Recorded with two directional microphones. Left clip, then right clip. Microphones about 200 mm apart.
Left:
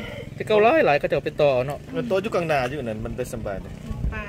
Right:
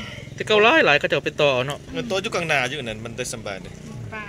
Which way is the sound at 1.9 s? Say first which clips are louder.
Left 2 dB; 40° left (ahead or behind).